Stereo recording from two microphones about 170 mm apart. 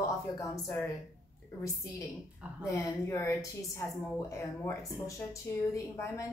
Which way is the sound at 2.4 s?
5° right (ahead or behind).